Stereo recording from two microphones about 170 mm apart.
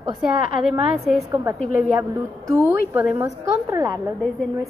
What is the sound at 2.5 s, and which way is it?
A woman's voice, 15° right (ahead or behind).